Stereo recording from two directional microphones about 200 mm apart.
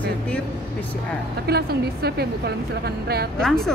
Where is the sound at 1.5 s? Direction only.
55° right (ahead or behind).